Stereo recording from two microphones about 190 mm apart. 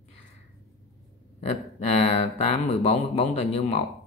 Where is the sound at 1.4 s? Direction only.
35° left (ahead or behind).